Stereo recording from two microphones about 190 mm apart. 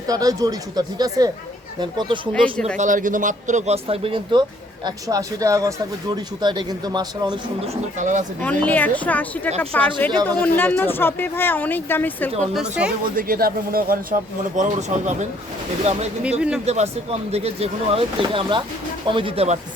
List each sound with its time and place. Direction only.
0.1 s speech: 20° right (ahead or behind)
2.3 s a woman's voice: 5° left (ahead or behind)
2.7 s speech: 45° right (ahead or behind); by 7.8 s 20° right (ahead or behind)
7.9 s speech: 40° right (ahead or behind)
8.4 s speech: 10° left (ahead or behind)
12.4 s a woman's voice: 5° right (ahead or behind)
13.1 s a man's voice: 50° right (ahead or behind); by 19.5 s 30° right (ahead or behind)